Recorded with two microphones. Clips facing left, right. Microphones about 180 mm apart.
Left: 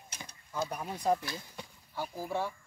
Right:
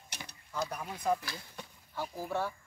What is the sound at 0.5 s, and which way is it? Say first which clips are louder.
Speech: left 1 dB; 15° left (ahead or behind).